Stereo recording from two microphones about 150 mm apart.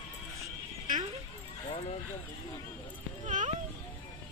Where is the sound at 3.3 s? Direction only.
55° right (ahead or behind).